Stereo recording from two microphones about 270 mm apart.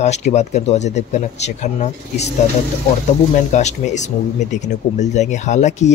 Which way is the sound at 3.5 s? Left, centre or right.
Left.